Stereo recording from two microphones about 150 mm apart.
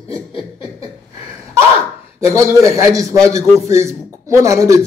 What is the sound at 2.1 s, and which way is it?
A man's voice, 20° right (ahead or behind).